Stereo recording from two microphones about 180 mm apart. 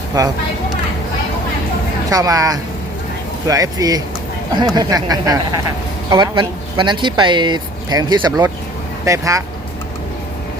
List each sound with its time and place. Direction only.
2.0 s speech: 20° right (ahead or behind)